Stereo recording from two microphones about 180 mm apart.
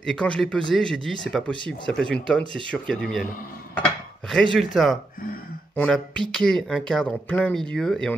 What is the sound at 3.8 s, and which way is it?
Dishes, centre (ahead or behind).